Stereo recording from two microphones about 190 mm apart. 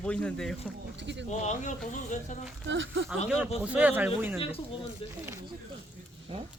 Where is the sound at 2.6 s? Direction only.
80° right.